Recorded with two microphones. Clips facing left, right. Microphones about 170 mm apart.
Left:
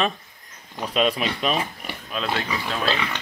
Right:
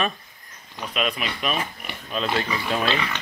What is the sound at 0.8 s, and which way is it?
Speech, 30° left (ahead or behind).